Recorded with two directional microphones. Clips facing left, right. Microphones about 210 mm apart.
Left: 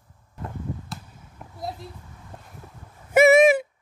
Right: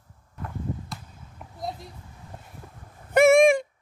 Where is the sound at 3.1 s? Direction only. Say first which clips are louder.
Left 1 dB; 5° left (ahead or behind).